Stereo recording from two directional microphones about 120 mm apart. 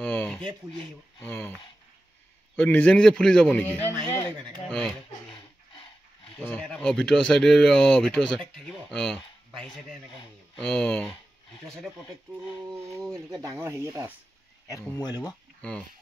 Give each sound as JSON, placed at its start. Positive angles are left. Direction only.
{"t": 0.0, "sound": "a sound", "side_deg": 10}
{"t": 1.2, "sound": "a man's voice", "side_deg": 15}
{"t": 2.5, "sound": "a man's voice", "side_deg": 15}
{"t": 4.1, "sound": "a sound", "side_deg": 20}
{"t": 4.6, "sound": "speech", "side_deg": 5}
{"t": 6.5, "sound": "speech", "side_deg": 5}
{"t": 12.9, "sound": "speech", "side_deg": 5}
{"t": 13.6, "sound": "speech", "side_deg": -25}
{"t": 15.0, "sound": "speech", "side_deg": 35}